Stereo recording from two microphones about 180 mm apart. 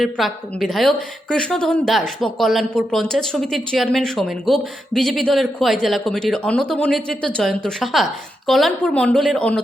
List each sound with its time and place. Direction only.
0.0 s a woman's voice: centre (ahead or behind)